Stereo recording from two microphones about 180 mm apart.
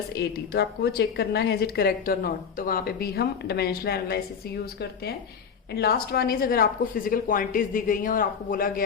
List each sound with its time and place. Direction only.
0.1 s a woman's voice: 65° left (ahead or behind)